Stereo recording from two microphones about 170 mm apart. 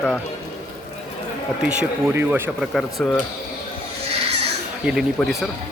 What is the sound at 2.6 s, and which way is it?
Speech, centre (ahead or behind).